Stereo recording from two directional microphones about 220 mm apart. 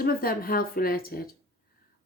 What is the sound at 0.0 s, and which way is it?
Speech, 40° left (ahead or behind).